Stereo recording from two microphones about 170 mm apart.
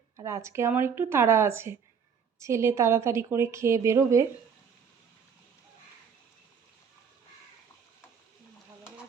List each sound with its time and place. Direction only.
0.2 s a woman's voice: 15° right (ahead or behind)